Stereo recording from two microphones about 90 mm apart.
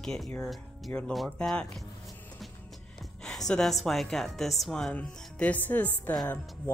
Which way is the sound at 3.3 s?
5° left (ahead or behind).